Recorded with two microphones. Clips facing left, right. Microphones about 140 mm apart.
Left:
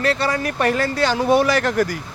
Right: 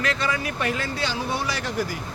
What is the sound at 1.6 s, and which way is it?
Speech, 60° left (ahead or behind).